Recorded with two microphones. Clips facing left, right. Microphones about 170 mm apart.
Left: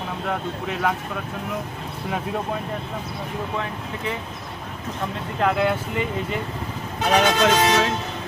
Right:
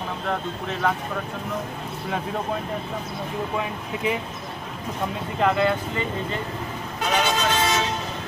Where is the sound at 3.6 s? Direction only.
15° right (ahead or behind).